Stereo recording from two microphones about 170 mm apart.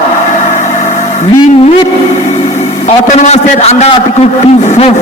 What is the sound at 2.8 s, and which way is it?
A man's voice, 45° left (ahead or behind).